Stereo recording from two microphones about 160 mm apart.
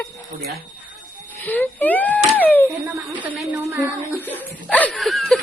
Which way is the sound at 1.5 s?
10° left (ahead or behind).